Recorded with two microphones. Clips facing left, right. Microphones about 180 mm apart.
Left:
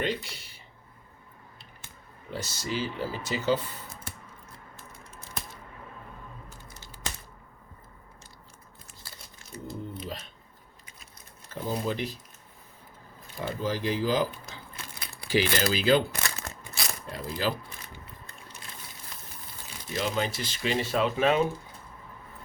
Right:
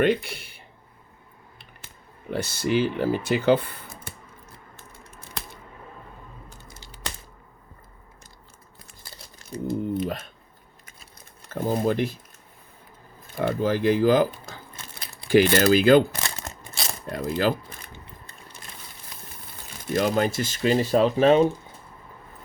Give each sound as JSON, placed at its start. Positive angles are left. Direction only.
{"t": 0.0, "sound": "speech", "side_deg": -60}
{"t": 2.3, "sound": "speech", "side_deg": -60}
{"t": 9.6, "sound": "speech", "side_deg": -55}
{"t": 11.4, "sound": "speech", "side_deg": -50}
{"t": 13.3, "sound": "speech", "side_deg": -60}
{"t": 15.5, "sound": "speech", "side_deg": -50}
{"t": 16.2, "sound": "a sound", "side_deg": -25}
{"t": 17.1, "sound": "speech", "side_deg": -55}
{"t": 19.9, "sound": "speech", "side_deg": -50}